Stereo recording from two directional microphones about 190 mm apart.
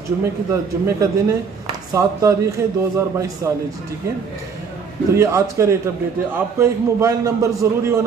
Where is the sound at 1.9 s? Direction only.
15° right (ahead or behind).